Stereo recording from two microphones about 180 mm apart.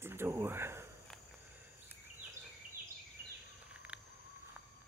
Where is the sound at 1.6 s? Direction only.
10° right (ahead or behind).